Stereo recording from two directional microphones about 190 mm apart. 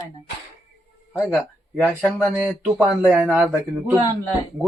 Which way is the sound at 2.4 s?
5° right (ahead or behind).